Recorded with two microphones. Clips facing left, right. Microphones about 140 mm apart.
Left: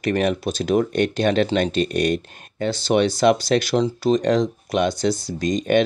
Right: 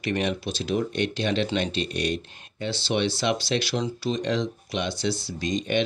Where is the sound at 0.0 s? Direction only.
45° left (ahead or behind).